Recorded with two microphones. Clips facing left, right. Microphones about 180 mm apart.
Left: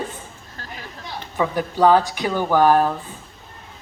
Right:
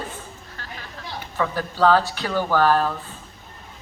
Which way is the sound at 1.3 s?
15° left (ahead or behind).